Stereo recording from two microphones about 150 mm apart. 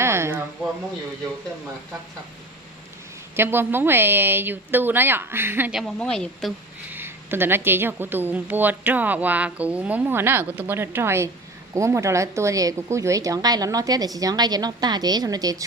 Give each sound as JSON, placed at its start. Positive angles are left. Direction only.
{"t": 0.0, "sound": "a sound", "side_deg": -15}
{"t": 3.3, "sound": "speech", "side_deg": -15}
{"t": 5.8, "sound": "a woman's voice", "side_deg": 5}
{"t": 6.9, "sound": "a woman's voice", "side_deg": -15}